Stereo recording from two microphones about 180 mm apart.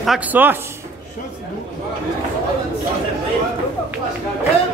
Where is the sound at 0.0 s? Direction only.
5° right (ahead or behind).